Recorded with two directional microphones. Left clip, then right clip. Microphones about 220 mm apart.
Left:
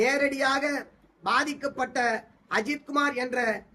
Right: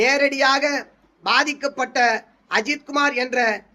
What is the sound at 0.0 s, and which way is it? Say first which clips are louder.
A man's voice: right 7 dB; 15° left (ahead or behind).